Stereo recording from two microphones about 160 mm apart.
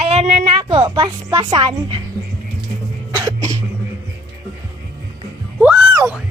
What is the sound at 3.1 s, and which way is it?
Cough, 25° right (ahead or behind).